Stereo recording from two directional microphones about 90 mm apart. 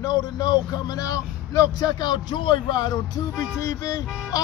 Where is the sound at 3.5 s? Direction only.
40° left (ahead or behind).